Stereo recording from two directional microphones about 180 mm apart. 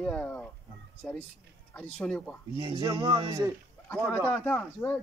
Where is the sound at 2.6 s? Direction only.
25° right (ahead or behind).